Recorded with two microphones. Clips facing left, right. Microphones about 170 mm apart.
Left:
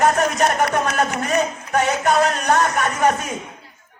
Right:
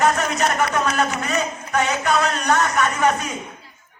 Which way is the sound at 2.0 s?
40° left (ahead or behind).